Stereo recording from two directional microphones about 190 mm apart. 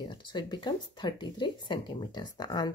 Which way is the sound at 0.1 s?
25° left (ahead or behind).